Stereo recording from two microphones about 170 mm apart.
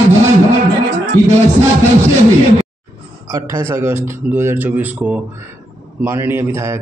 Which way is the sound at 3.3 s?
20° right (ahead or behind).